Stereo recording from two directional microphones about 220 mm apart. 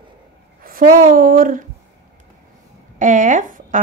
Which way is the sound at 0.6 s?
40° right (ahead or behind).